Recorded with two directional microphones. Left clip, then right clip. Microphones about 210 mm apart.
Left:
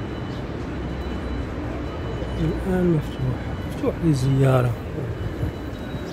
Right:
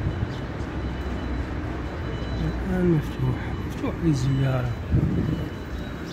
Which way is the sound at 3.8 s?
15° left (ahead or behind).